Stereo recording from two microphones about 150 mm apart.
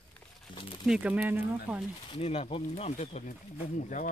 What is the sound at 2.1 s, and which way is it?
Speech, 45° left (ahead or behind).